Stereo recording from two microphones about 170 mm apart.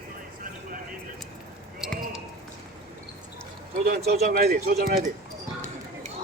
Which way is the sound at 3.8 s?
65° right (ahead or behind).